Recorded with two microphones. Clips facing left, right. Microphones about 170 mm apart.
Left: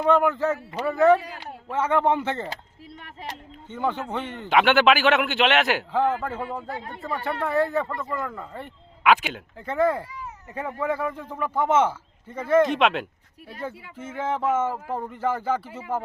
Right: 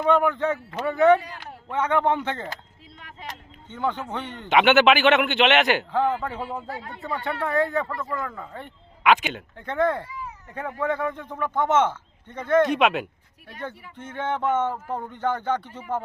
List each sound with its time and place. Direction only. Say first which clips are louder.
0.0 s a man's voice: even; 5° left (ahead or behind)
0.6 s speech: even; 15° left (ahead or behind)
0.9 s a man's voice: even; centre (ahead or behind)
3.7 s a man's voice: left 1 dB; 10° left (ahead or behind)
7.9 s speech: even; 20° left (ahead or behind)
8.2 s a man's voice: left 1 dB; 5° left (ahead or behind)